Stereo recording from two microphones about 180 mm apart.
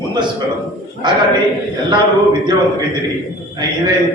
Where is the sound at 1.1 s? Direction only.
25° right (ahead or behind).